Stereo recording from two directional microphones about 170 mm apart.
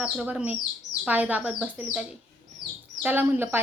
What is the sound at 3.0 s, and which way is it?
Speech, 10° right (ahead or behind).